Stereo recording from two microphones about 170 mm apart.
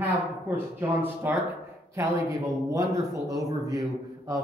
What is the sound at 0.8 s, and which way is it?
Speech, 10° right (ahead or behind).